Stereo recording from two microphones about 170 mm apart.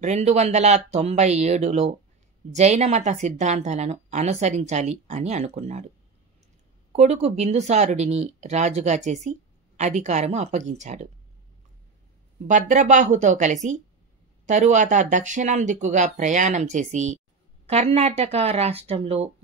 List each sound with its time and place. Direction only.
0.0 s a woman's voice: 40° right (ahead or behind)
6.9 s speech: 40° right (ahead or behind)
12.4 s a woman's voice: 50° right (ahead or behind)